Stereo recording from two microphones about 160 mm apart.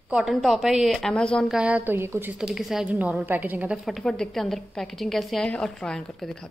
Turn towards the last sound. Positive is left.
turn(degrees=5)  # may be behind; listen again after turning